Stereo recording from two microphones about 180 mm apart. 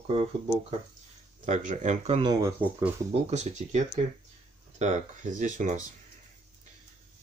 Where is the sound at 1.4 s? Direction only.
40° right (ahead or behind).